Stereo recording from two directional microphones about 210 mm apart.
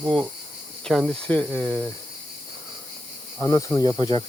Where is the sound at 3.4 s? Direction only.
15° left (ahead or behind).